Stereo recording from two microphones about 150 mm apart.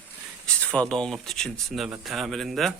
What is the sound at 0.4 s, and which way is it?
Speech, 10° left (ahead or behind).